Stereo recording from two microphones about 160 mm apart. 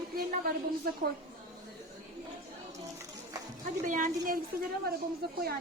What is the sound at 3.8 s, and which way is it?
Speech, 55° right (ahead or behind).